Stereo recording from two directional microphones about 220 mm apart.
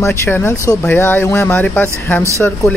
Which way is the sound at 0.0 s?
10° left (ahead or behind).